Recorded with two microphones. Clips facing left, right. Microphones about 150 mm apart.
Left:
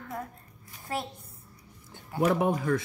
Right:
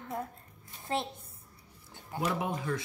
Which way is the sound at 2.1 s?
55° left (ahead or behind).